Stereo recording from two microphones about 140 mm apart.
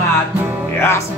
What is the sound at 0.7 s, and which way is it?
Music, 20° left (ahead or behind).